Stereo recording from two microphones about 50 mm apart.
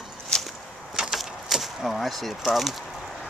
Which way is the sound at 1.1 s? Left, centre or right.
Centre.